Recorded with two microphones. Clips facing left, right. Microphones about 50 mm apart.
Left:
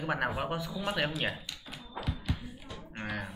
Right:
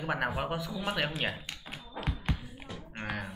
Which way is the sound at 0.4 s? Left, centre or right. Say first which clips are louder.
Even; centre.